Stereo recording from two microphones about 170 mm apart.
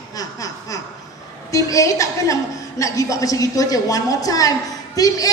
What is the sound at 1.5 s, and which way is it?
A woman's voice, 20° left (ahead or behind).